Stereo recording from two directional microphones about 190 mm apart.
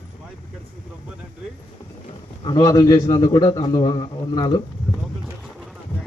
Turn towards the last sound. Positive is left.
turn(degrees=25)  # may be behind; listen again after turning